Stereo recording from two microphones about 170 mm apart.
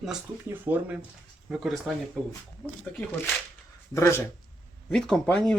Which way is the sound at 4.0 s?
15° left (ahead or behind).